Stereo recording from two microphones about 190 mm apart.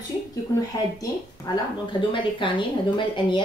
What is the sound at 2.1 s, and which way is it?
A woman's voice, 25° left (ahead or behind).